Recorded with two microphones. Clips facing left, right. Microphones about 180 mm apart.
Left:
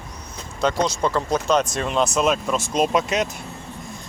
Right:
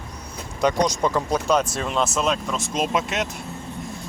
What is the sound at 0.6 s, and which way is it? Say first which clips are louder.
Speech: right 1 dB; 15° right (ahead or behind).